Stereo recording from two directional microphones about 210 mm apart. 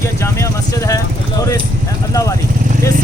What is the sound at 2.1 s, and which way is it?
Speech, 15° left (ahead or behind).